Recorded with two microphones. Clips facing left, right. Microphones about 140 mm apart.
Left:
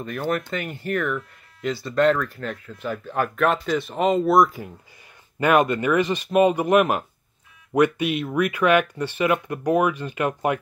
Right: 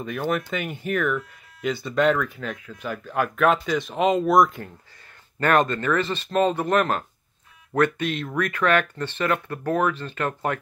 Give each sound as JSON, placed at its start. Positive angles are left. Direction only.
{"t": 0.0, "sound": "speech", "side_deg": 0}